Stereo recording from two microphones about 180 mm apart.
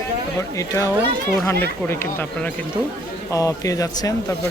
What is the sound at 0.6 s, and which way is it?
Speech, 15° left (ahead or behind).